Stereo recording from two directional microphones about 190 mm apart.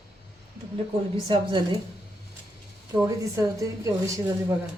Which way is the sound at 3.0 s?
15° right (ahead or behind).